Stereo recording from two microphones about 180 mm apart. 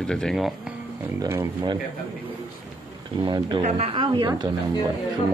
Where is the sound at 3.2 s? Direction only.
25° right (ahead or behind).